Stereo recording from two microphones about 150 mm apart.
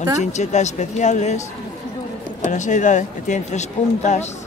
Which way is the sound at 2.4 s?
55° left (ahead or behind).